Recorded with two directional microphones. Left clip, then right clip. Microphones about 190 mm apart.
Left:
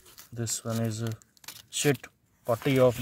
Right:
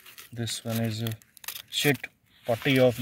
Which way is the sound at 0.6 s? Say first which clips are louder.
Even; 10° left (ahead or behind).